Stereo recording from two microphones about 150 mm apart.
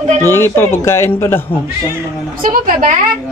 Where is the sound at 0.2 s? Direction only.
15° left (ahead or behind).